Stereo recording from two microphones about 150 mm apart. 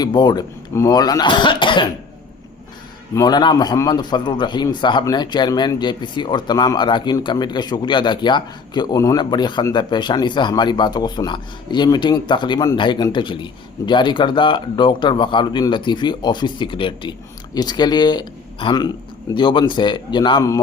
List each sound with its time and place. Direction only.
0.0 s speech: 30° left (ahead or behind)
3.2 s speech: 25° left (ahead or behind)